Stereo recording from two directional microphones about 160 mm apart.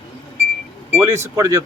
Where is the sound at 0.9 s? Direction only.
15° right (ahead or behind).